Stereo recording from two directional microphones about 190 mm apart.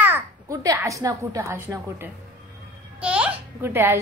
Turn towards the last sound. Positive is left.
turn(degrees=-10)  # may be behind; listen again after turning